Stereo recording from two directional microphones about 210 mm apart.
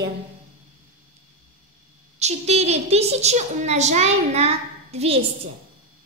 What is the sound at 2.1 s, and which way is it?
A woman's voice, 30° right (ahead or behind).